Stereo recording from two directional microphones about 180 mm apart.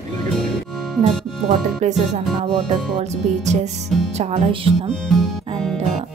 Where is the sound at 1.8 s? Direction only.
40° right (ahead or behind).